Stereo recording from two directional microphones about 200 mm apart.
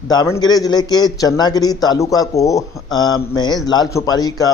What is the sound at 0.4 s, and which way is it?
A man's voice, 20° left (ahead or behind).